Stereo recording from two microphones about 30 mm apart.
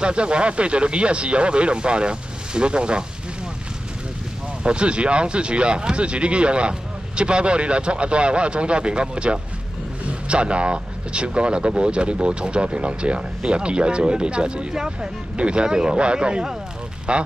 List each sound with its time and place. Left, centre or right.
0.0 s speech: right
4.6 s speech: right
14.7 s speech: right
15.3 s speech: right